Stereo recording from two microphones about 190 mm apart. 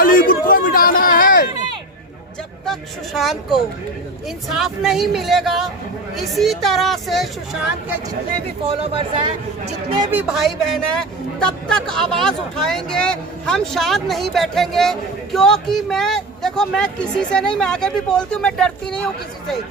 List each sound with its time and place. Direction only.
0.0 s a sound: 50° left (ahead or behind)
2.6 s speech: centre (ahead or behind)
8.6 s speech: 30° right (ahead or behind)
10.1 s speech: 5° right (ahead or behind)